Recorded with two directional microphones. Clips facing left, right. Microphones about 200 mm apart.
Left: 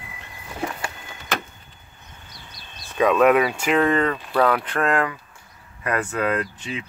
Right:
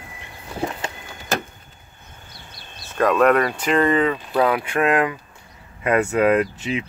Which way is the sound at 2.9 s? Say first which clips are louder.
Even; centre (ahead or behind).